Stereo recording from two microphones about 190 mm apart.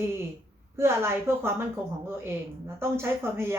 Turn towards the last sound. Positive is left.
turn(degrees=-10)  # may be behind; listen again after turning